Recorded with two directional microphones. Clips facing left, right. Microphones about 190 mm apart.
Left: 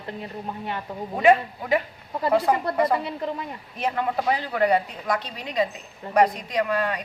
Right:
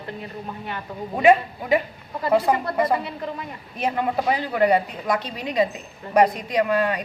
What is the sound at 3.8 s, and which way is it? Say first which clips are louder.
Speech: right 2 dB; 15° right (ahead or behind).